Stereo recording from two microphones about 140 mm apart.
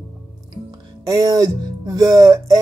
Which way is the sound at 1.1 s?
25° right (ahead or behind).